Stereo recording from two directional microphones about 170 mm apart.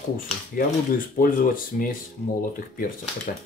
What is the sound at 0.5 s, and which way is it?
Speech, 55° left (ahead or behind).